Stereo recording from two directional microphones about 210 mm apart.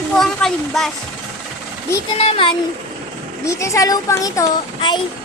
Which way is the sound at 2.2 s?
30° left (ahead or behind).